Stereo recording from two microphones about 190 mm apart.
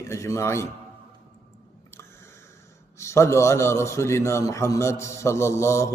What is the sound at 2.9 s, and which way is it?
A man's voice, 15° left (ahead or behind).